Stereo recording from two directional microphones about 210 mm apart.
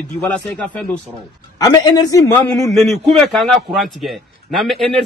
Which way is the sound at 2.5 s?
Centre (ahead or behind).